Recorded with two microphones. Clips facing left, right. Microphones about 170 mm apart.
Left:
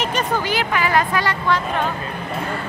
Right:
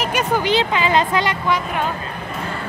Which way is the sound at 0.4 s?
20° right (ahead or behind).